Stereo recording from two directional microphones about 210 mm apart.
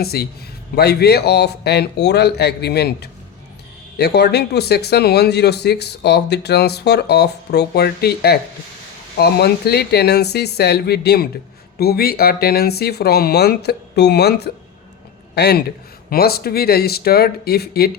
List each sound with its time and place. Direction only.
0.0 s speech: 50° left (ahead or behind)